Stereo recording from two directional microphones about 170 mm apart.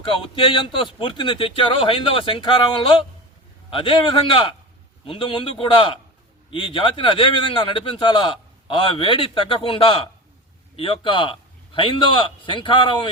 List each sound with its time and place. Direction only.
0.3 s a man's voice: 30° left (ahead or behind)
3.7 s a man's voice: 30° left (ahead or behind)